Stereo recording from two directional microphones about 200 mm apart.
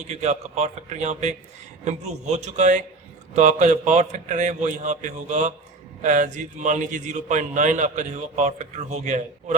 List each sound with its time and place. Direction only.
0.1 s a man's voice: 35° right (ahead or behind)